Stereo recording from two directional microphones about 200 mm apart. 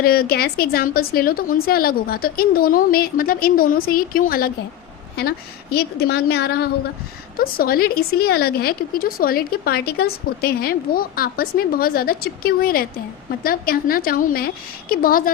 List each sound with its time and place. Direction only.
0.0 s a woman's voice: 50° left (ahead or behind)
5.7 s a woman's voice: 55° left (ahead or behind)